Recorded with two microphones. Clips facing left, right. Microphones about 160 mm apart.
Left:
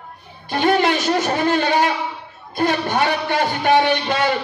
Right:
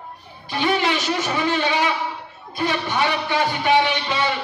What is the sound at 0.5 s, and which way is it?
A man's voice, 50° left (ahead or behind).